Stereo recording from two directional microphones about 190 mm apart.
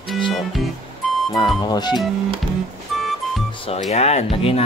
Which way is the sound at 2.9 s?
Centre (ahead or behind).